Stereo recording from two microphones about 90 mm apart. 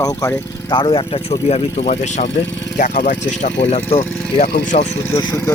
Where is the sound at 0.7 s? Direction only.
60° left (ahead or behind).